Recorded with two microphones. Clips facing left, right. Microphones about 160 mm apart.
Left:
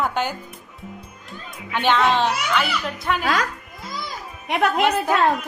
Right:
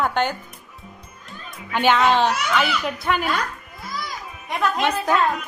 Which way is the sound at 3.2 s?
90° left.